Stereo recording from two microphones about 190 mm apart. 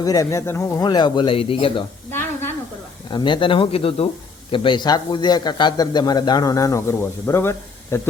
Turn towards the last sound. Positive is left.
turn(degrees=15)  # may be behind; listen again after turning